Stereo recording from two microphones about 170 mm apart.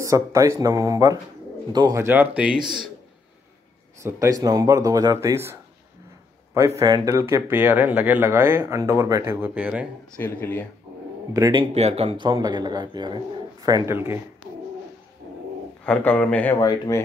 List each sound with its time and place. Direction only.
0.0 s speech: 20° right (ahead or behind); by 2.9 s centre (ahead or behind)
4.0 s speech: 20° right (ahead or behind)
6.8 s speech: 20° right (ahead or behind)
10.1 s a man's voice: 10° left (ahead or behind)
11.3 s speech: 20° right (ahead or behind)
11.7 s speech: 40° right (ahead or behind); by 14.2 s 15° right (ahead or behind)
15.8 s a man's voice: 10° left (ahead or behind)
16.5 s speech: 25° left (ahead or behind)